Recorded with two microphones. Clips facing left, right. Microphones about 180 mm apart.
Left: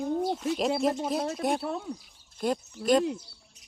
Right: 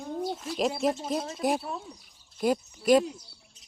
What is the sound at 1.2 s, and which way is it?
Speech, 60° left (ahead or behind).